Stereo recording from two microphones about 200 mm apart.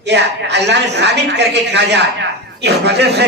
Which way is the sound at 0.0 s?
60° right (ahead or behind).